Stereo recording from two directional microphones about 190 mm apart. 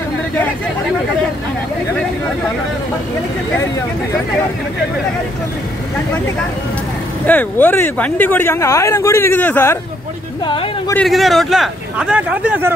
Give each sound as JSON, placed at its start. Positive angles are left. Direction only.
{"t": 7.2, "sound": "speech", "side_deg": 10}
{"t": 10.4, "sound": "speech", "side_deg": 25}
{"t": 11.0, "sound": "speech", "side_deg": 0}